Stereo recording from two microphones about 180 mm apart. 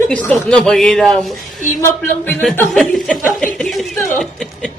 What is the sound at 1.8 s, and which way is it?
Chuckle, 5° left (ahead or behind).